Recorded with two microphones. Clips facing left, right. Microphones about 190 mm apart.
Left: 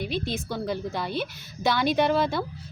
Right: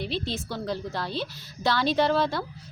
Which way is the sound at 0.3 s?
15° left (ahead or behind).